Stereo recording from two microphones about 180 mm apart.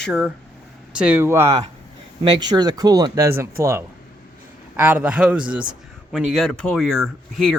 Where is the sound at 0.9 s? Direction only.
10° right (ahead or behind).